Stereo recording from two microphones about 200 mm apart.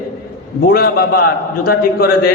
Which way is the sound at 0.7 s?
50° left (ahead or behind).